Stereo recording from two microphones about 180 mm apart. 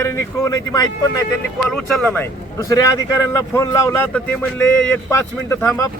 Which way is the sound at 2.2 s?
20° left (ahead or behind).